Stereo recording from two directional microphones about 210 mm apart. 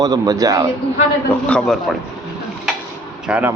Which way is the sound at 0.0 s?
20° right (ahead or behind).